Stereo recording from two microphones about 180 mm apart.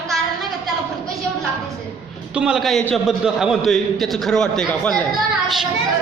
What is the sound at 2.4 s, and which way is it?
Speech, 5° right (ahead or behind).